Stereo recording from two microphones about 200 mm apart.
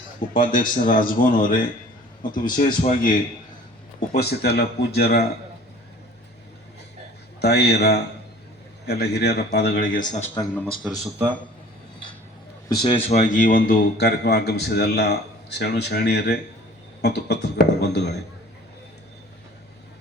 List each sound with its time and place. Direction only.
0.3 s a man's voice: 40° left (ahead or behind)
4.1 s a man's voice: 50° left (ahead or behind)
7.4 s a man's voice: 55° left (ahead or behind); by 10.2 s 40° left (ahead or behind)
10.5 s speech: 5° left (ahead or behind)
12.6 s a man's voice: 20° left (ahead or behind); by 18.2 s 55° left (ahead or behind)